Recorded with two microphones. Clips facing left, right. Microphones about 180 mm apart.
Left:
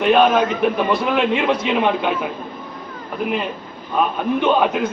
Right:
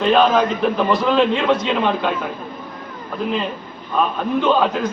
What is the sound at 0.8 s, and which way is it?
Speech, 10° left (ahead or behind).